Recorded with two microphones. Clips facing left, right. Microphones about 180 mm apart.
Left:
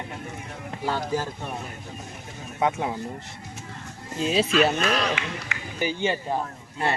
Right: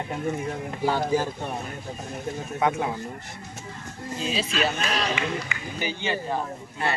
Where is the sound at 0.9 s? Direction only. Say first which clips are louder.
Right 3 dB; 15° right (ahead or behind).